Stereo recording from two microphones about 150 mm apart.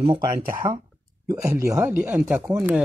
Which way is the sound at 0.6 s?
25° right (ahead or behind).